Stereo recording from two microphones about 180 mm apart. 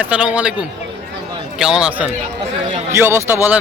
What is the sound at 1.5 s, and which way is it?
A man's voice, 5° right (ahead or behind).